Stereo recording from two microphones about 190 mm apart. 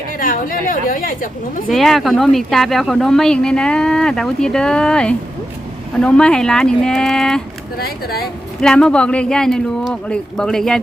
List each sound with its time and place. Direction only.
0.2 s a woman's voice: 45° left (ahead or behind)
1.7 s speech: centre (ahead or behind)
7.8 s speech: 55° left (ahead or behind)
8.6 s speech: 5° left (ahead or behind)